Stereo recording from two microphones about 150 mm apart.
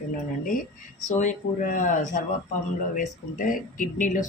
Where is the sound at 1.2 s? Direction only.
60° left (ahead or behind).